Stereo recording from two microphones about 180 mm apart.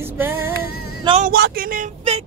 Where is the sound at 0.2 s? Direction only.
10° right (ahead or behind).